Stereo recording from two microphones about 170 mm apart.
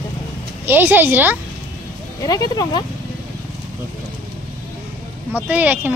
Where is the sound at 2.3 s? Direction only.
20° left (ahead or behind).